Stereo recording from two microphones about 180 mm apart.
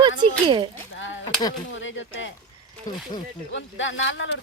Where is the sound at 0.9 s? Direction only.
90° left.